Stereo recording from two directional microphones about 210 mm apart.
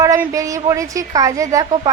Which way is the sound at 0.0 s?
15° right (ahead or behind).